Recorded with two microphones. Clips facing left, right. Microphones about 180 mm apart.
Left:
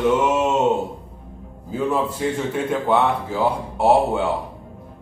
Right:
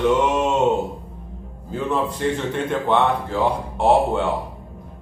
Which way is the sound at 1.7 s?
5° left (ahead or behind).